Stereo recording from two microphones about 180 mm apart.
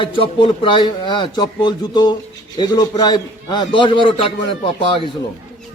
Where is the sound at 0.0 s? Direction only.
30° left (ahead or behind).